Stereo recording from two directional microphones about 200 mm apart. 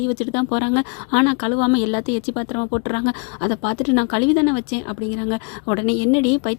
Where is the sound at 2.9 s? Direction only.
30° left (ahead or behind).